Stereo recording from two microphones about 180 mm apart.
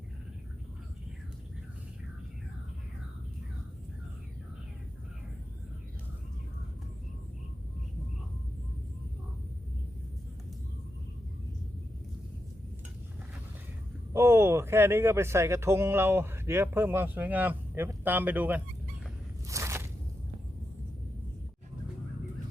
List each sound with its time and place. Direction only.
14.1 s speech: 15° right (ahead or behind)
19.5 s biting: 15° right (ahead or behind)